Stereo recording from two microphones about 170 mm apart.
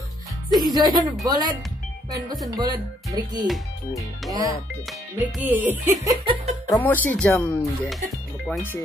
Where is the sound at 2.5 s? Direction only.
25° right (ahead or behind).